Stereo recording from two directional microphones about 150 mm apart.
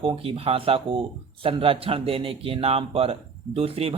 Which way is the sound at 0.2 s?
40° right (ahead or behind).